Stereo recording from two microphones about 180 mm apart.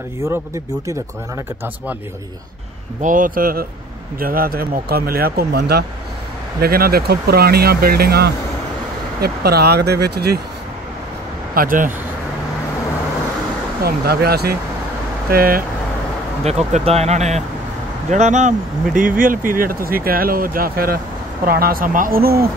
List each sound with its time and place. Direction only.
3.0 s speech: 45° right (ahead or behind); by 10.4 s 65° right (ahead or behind)
11.5 s speech: 50° right (ahead or behind)
13.8 s speech: 60° right (ahead or behind)
16.4 s speech: 35° right (ahead or behind); by 22.5 s 55° right (ahead or behind)